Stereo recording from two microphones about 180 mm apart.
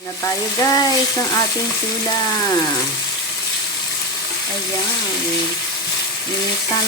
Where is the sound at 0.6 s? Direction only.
20° left (ahead or behind).